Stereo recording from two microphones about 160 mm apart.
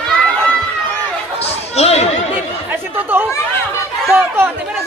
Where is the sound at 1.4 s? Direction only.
40° left (ahead or behind).